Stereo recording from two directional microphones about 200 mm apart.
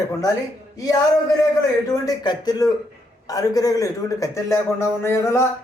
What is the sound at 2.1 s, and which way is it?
A man's voice, 20° left (ahead or behind).